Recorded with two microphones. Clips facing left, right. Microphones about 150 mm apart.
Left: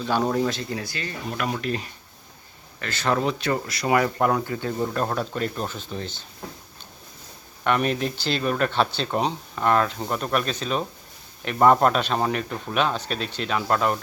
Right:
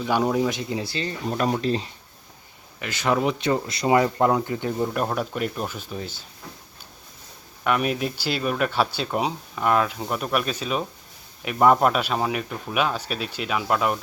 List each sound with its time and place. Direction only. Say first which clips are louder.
0.0 s speech: right 1 dB; 10° right (ahead or behind); by 1.9 s 25° right (ahead or behind)
2.7 s speech: right 1 dB; 15° right (ahead or behind)
7.6 s speech: even; 5° right (ahead or behind)